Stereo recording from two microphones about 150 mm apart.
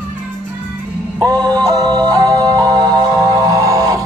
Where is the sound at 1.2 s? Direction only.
25° right (ahead or behind).